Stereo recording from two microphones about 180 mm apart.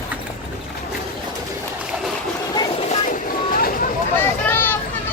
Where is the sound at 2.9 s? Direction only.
50° left (ahead or behind).